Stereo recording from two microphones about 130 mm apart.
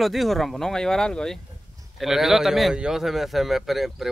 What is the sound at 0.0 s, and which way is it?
A man's voice, centre (ahead or behind).